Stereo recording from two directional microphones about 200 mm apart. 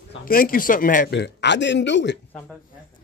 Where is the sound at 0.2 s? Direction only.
45° left (ahead or behind); by 2.1 s 60° left (ahead or behind).